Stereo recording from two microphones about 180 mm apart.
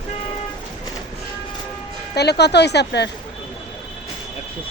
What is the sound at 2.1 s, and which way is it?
Speech, 65° left (ahead or behind).